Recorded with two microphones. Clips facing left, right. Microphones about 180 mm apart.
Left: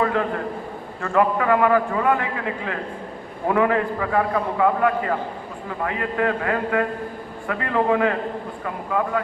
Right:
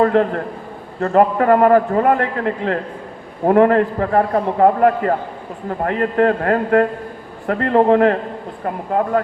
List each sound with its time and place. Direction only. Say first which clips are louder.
0.0 s a man's voice: right 7 dB; 45° right (ahead or behind)